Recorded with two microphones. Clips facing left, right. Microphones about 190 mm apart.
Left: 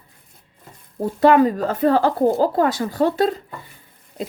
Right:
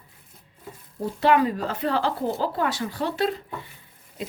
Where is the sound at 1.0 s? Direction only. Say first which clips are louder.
Left 6 dB; 45° left (ahead or behind).